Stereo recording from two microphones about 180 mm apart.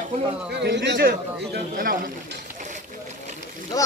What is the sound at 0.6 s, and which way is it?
A man's voice, 70° right (ahead or behind).